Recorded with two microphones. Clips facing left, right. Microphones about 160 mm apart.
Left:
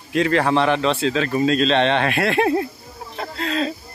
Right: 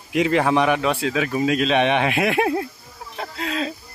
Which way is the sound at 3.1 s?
10° right (ahead or behind).